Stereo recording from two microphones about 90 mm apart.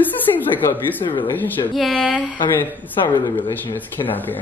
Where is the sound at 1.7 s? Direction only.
Centre (ahead or behind).